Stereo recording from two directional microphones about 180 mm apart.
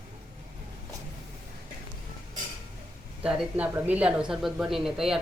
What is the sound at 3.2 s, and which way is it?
Speech, 5° right (ahead or behind).